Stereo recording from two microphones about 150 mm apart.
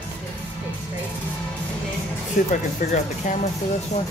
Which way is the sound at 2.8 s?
55° left (ahead or behind).